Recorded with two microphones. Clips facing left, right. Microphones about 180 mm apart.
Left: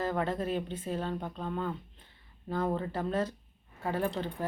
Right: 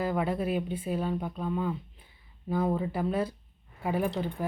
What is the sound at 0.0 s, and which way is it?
Speech, 10° right (ahead or behind).